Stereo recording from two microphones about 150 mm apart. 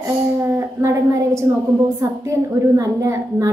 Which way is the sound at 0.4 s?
20° right (ahead or behind).